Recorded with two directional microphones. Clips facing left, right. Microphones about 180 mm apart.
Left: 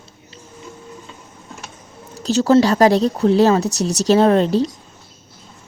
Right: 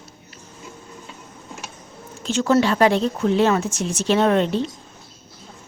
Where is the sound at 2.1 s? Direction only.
35° left (ahead or behind).